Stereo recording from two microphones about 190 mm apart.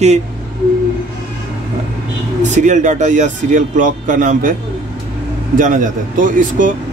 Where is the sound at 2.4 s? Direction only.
40° right (ahead or behind).